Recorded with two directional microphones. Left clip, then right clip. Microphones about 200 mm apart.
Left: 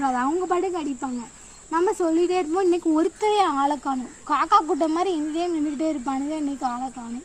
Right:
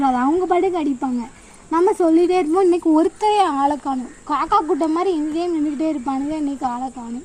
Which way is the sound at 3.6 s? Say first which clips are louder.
Right 4 dB; 5° right (ahead or behind).